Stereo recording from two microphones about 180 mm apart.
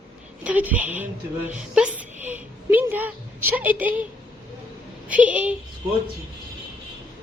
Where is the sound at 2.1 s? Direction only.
40° right (ahead or behind).